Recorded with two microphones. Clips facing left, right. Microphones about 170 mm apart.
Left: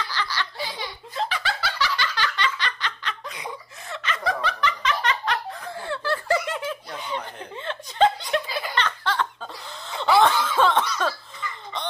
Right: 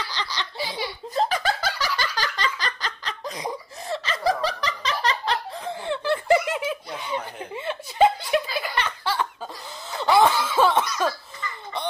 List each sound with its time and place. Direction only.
0.1 s a sound: 20° right (ahead or behind)
1.1 s snicker: 45° right (ahead or behind)
2.1 s laughter: 40° right (ahead or behind)
5.9 s snicker: 20° right (ahead or behind)